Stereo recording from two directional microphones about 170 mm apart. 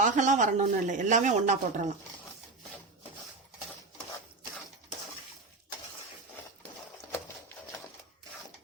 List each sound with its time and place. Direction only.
0.0 s speech: 45° right (ahead or behind)